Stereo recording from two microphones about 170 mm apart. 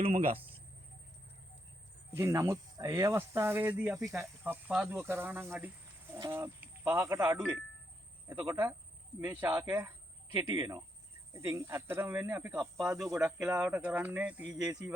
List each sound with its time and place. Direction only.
0.2 s speech: 35° right (ahead or behind)
2.1 s speech: 15° right (ahead or behind)
12.5 s speech: centre (ahead or behind)